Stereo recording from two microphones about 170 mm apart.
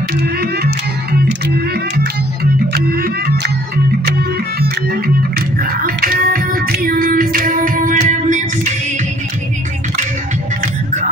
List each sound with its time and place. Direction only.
0.2 s music: 65° right (ahead or behind)
2.4 s music: 65° right (ahead or behind)
5.6 s music: 60° right (ahead or behind)